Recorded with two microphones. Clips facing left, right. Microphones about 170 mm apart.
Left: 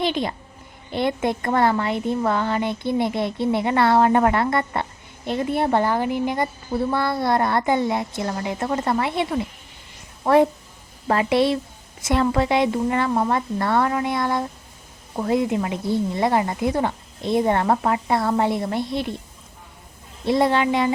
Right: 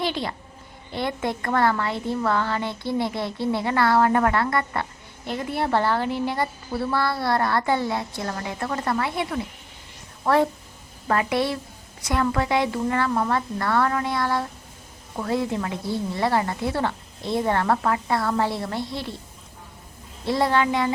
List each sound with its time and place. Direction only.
0.0 s speech: 20° left (ahead or behind)
20.2 s speech: 20° left (ahead or behind)